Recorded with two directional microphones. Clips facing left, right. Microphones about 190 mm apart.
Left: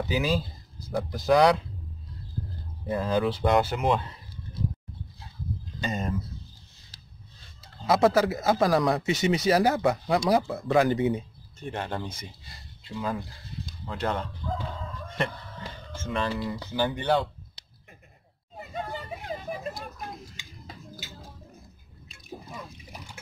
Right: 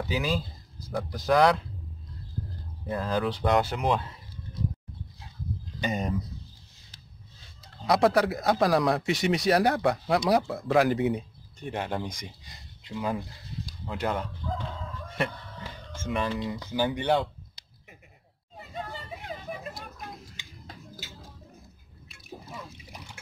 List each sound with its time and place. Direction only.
0.1 s speech: 5° left (ahead or behind)
2.9 s speech: 5° left (ahead or behind)
5.8 s speech: 15° right (ahead or behind)
7.6 s speech: centre (ahead or behind)
11.6 s speech: 15° right (ahead or behind)
14.5 s crowing: centre (ahead or behind)
16.0 s speech: 10° right (ahead or behind)